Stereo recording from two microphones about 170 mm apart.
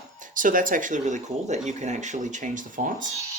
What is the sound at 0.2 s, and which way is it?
Speech, 50° right (ahead or behind).